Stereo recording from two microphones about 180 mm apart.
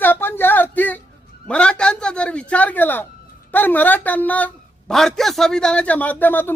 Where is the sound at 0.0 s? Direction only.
10° left (ahead or behind).